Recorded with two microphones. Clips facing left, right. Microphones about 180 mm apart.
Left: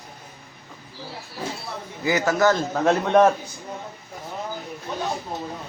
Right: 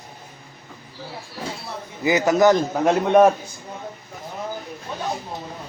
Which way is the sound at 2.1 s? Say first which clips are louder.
Right 4 dB; 20° right (ahead or behind).